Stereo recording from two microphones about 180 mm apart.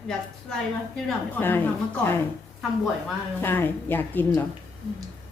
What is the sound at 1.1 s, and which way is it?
A woman's voice, 10° left (ahead or behind).